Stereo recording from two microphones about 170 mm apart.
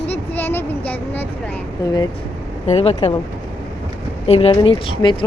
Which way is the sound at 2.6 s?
35° left (ahead or behind).